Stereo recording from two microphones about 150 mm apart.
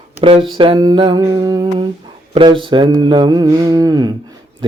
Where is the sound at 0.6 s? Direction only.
30° right (ahead or behind).